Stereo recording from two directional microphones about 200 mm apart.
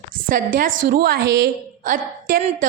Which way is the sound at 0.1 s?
45° right (ahead or behind).